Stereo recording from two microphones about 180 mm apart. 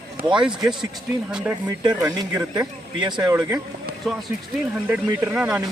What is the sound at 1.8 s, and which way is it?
Speech, 20° right (ahead or behind).